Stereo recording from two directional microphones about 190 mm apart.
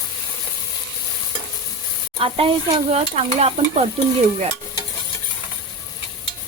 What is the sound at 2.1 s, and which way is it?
Stir, 30° right (ahead or behind).